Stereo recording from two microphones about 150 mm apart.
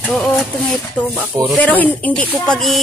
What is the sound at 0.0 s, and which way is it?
Speech, 5° left (ahead or behind).